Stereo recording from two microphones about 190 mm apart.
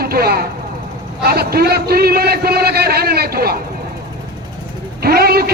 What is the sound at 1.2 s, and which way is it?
A man's voice, 55° right (ahead or behind).